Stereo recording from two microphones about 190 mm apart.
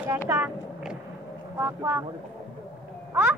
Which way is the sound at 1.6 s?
10° right (ahead or behind).